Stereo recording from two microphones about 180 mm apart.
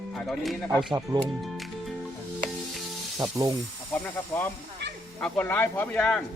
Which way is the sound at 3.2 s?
20° right (ahead or behind).